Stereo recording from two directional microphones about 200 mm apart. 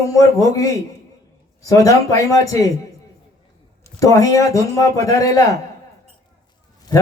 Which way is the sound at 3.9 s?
15° left (ahead or behind).